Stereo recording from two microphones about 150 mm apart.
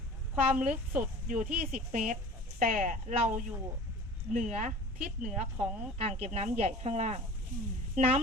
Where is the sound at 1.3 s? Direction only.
60° right (ahead or behind).